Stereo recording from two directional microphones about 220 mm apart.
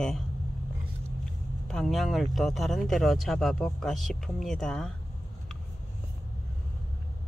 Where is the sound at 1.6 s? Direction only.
Centre (ahead or behind).